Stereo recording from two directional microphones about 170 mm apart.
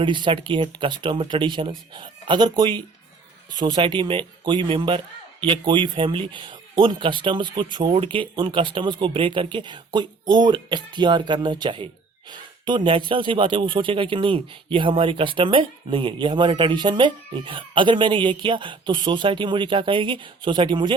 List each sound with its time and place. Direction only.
0.0 s speech: 30° right (ahead or behind)